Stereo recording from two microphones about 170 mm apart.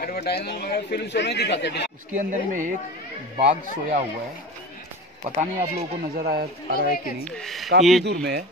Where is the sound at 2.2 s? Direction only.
50° right (ahead or behind).